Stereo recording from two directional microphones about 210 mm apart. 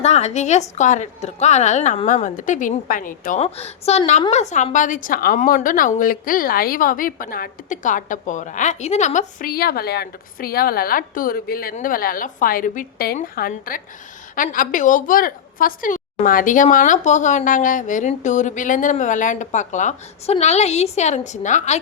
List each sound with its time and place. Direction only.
0.0 s a woman's voice: 30° left (ahead or behind)
3.4 s a woman's voice: 30° left (ahead or behind)